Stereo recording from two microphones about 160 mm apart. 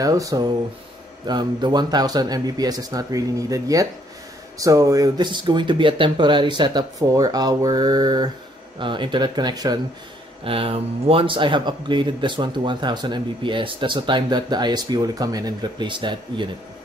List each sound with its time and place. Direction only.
0.0 s a man's voice: 20° right (ahead or behind)
10.4 s a man's voice: 35° right (ahead or behind)